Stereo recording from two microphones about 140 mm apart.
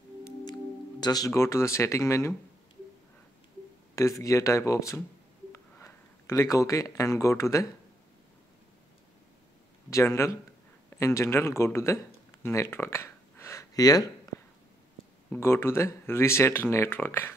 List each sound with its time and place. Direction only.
1.0 s speech: 25° left (ahead or behind)
3.9 s speech: 20° left (ahead or behind)
9.8 s speech: 20° left (ahead or behind)
12.4 s a sound: 15° left (ahead or behind)
15.4 s speech: 20° left (ahead or behind)